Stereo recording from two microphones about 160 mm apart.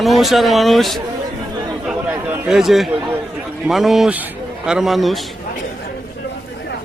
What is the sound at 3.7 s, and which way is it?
A man's voice, centre (ahead or behind).